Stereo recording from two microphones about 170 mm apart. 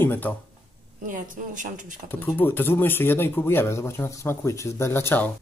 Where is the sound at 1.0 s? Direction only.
50° right (ahead or behind).